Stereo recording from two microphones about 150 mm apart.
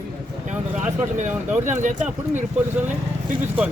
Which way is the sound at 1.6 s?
55° right (ahead or behind).